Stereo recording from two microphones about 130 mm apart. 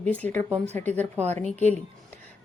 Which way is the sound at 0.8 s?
15° left (ahead or behind).